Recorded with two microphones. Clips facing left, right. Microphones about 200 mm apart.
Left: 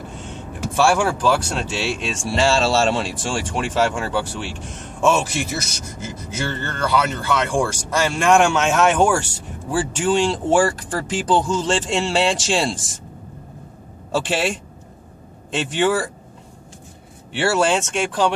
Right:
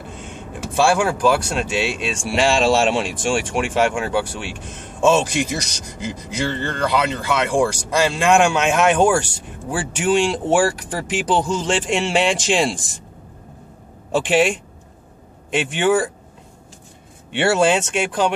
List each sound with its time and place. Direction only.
0.2 s speech: 15° right (ahead or behind)
10.2 s speech: 15° right (ahead or behind)
14.1 s speech: 15° right (ahead or behind)
17.3 s speech: 20° right (ahead or behind)